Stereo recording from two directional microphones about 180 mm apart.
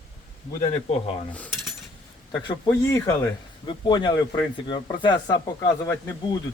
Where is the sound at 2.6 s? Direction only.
15° left (ahead or behind).